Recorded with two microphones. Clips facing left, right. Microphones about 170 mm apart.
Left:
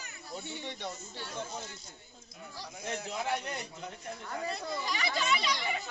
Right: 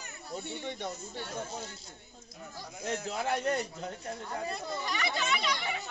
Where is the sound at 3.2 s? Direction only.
40° right (ahead or behind).